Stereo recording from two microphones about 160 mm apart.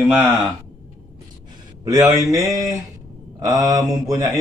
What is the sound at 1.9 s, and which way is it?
Speech, 25° right (ahead or behind).